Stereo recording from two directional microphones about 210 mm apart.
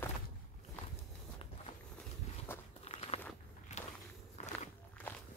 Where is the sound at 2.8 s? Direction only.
30° left (ahead or behind).